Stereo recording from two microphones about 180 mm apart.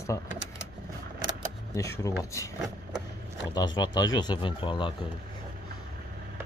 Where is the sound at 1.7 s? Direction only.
20° left (ahead or behind).